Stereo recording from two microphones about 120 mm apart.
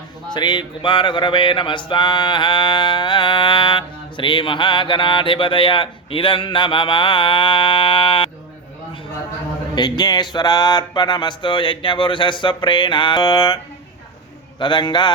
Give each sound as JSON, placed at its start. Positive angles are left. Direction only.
{"t": 0.3, "sound": "music", "side_deg": 40}
{"t": 9.7, "sound": "music", "side_deg": 35}
{"t": 14.6, "sound": "music", "side_deg": 40}